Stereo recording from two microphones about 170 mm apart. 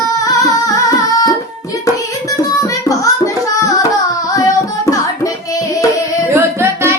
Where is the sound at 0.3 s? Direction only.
20° left (ahead or behind).